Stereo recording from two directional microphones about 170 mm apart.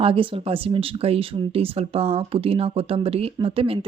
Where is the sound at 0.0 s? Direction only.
30° right (ahead or behind).